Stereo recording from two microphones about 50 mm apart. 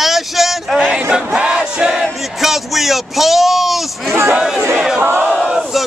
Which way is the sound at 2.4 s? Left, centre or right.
Centre.